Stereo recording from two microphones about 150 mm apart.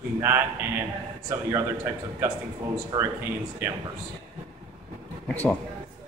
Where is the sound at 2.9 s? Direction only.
30° right (ahead or behind).